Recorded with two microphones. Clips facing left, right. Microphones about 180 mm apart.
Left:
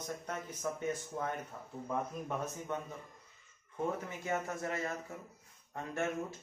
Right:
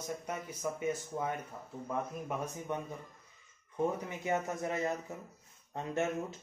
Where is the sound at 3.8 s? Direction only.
15° right (ahead or behind).